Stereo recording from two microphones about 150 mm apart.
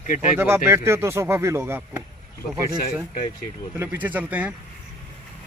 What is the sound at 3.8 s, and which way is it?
Speech, 10° right (ahead or behind).